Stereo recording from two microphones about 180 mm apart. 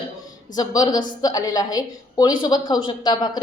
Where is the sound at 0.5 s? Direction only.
20° left (ahead or behind).